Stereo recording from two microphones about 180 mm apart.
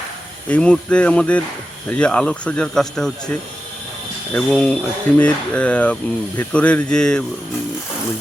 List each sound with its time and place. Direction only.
0.4 s speech: 5° left (ahead or behind)